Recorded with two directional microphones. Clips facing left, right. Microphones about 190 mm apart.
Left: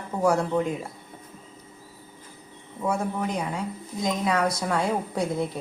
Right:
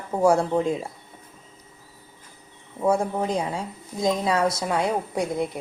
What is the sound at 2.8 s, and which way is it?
Speech, 30° right (ahead or behind).